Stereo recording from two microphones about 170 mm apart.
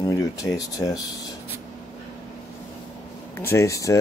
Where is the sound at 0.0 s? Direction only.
20° left (ahead or behind).